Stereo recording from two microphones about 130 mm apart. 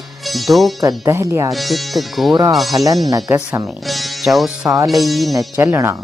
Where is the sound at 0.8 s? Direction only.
20° right (ahead or behind).